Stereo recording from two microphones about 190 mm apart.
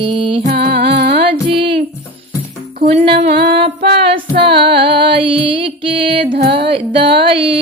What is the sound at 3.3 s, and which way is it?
Music, 60° right (ahead or behind).